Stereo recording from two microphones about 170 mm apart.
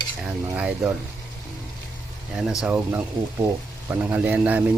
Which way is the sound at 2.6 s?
10° right (ahead or behind).